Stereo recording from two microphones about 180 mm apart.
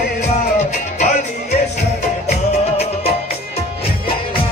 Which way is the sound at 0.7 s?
40° left (ahead or behind).